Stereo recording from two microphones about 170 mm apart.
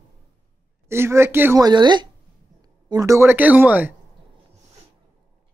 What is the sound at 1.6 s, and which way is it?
Speech, 25° right (ahead or behind).